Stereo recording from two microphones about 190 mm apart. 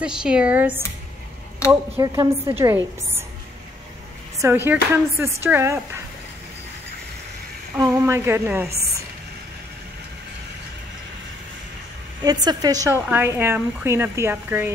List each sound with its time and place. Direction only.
0.0 s speech: 5° right (ahead or behind)
1.7 s a woman's voice: 15° right (ahead or behind)
4.4 s a woman's voice: 10° right (ahead or behind)
7.7 s a woman's voice: 15° right (ahead or behind)
8.6 s a woman's voice: 55° right (ahead or behind)
12.3 s a woman's voice: 20° right (ahead or behind)